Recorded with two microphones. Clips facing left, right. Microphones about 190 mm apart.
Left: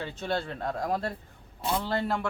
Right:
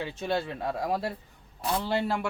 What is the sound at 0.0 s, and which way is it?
Speech, 10° right (ahead or behind).